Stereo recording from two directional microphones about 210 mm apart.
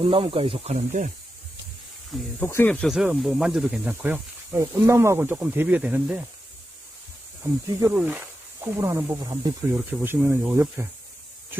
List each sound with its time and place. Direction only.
0.0 s speech: 25° right (ahead or behind)
2.4 s speech: 10° left (ahead or behind); by 6.2 s 5° right (ahead or behind)
7.8 s speech: 10° right (ahead or behind)